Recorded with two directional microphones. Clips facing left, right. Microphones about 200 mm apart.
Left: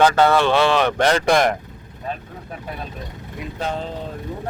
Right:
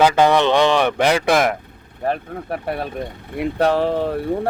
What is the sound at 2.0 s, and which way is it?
Speech, 70° right (ahead or behind).